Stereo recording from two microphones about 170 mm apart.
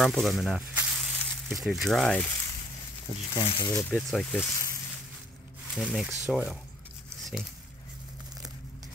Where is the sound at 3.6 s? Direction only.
15° left (ahead or behind).